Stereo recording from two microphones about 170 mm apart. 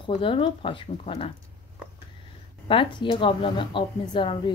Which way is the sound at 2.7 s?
30° left (ahead or behind).